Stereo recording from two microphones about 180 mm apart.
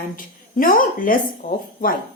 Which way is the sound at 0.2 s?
50° left (ahead or behind).